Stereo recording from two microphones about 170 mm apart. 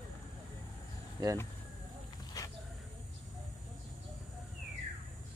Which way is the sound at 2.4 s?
20° left (ahead or behind).